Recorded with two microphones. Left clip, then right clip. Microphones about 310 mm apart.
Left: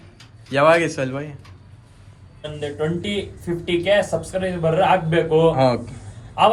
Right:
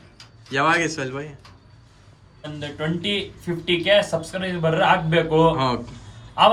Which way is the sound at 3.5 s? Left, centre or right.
Right.